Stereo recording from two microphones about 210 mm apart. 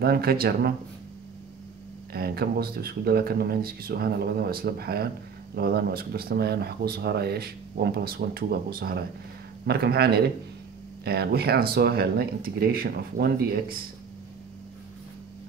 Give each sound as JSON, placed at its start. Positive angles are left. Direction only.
{"t": 0.0, "sound": "speech", "side_deg": -45}
{"t": 2.1, "sound": "speech", "side_deg": -50}